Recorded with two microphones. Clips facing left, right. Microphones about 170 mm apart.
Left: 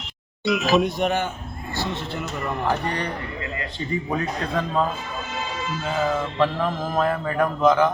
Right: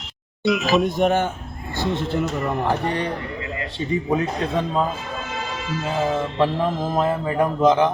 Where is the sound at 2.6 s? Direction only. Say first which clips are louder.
Left 1 dB; 20° right (ahead or behind).